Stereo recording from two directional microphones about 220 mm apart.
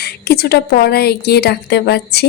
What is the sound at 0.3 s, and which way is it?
Speech, 45° left (ahead or behind).